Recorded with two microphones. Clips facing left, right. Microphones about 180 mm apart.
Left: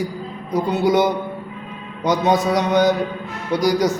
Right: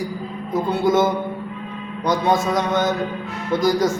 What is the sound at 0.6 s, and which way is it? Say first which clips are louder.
A man's voice: left 1 dB; 15° left (ahead or behind).